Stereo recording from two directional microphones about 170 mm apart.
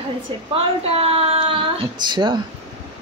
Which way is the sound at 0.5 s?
35° right (ahead or behind).